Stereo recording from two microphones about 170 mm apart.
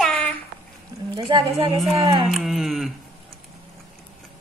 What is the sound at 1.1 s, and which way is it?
Speech, 30° right (ahead or behind).